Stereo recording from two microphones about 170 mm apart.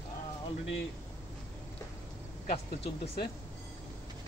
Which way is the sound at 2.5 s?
35° left (ahead or behind).